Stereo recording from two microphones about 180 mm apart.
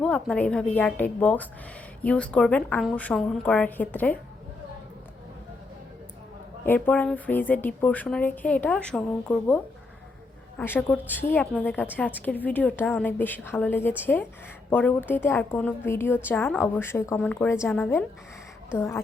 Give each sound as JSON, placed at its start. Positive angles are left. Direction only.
{"t": 0.0, "sound": "a woman's voice", "side_deg": 5}
{"t": 6.7, "sound": "a woman's voice", "side_deg": 10}
{"t": 10.6, "sound": "a woman's voice", "side_deg": 10}